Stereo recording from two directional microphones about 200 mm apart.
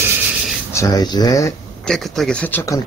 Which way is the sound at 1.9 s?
Centre (ahead or behind).